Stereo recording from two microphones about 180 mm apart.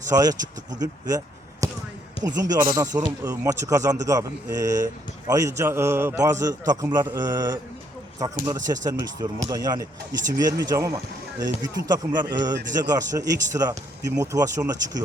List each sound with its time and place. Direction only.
0.1 s speech: 20° right (ahead or behind)
1.6 s basketball bounce: 20° right (ahead or behind)
2.2 s speech: 20° right (ahead or behind)